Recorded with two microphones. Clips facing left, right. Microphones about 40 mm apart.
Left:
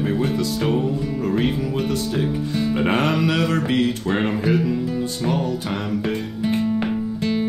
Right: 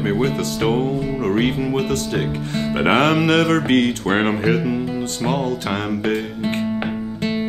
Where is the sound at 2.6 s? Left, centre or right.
Right.